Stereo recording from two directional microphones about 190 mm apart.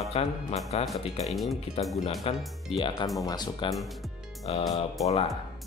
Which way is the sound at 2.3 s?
30° left (ahead or behind).